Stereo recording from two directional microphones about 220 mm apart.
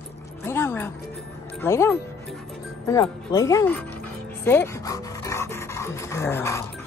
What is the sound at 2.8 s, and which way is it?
Music, 15° left (ahead or behind).